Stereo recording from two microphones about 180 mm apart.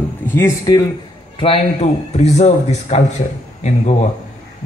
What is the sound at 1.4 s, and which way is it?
Speech, 35° left (ahead or behind).